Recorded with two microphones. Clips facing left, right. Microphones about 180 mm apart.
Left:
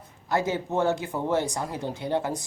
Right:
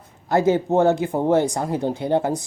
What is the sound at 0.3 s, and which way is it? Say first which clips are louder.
Speech: right 8 dB; 50° right (ahead or behind).